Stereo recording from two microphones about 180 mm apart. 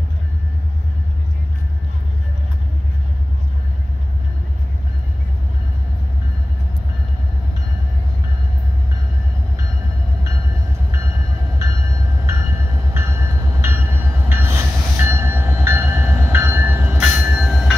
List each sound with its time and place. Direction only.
11.5 s train: 20° right (ahead or behind); by 17.7 s centre (ahead or behind)